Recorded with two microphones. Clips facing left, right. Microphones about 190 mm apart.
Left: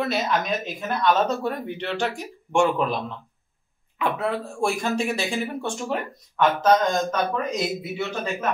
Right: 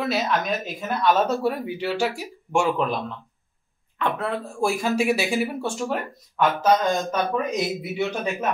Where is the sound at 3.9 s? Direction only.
5° left (ahead or behind).